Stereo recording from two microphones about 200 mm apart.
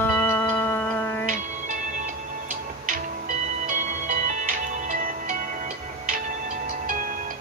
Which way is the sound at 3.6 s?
40° right (ahead or behind).